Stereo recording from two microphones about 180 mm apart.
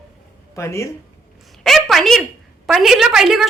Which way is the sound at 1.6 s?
Centre (ahead or behind).